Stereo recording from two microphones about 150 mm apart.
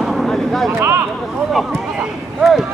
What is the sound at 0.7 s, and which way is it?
Speech, 20° right (ahead or behind).